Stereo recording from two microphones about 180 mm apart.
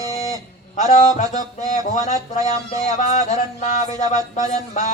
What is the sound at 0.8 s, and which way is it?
Music, 45° left (ahead or behind).